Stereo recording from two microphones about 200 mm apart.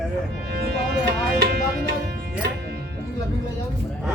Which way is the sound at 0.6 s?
55° right (ahead or behind).